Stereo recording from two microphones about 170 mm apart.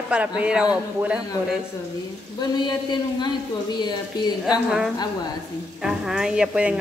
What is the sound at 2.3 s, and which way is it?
A woman's voice, 25° left (ahead or behind).